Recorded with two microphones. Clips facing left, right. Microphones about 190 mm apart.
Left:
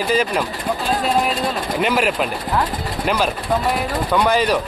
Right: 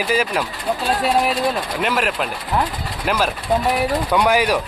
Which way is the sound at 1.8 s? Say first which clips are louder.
Left 5 dB; centre (ahead or behind).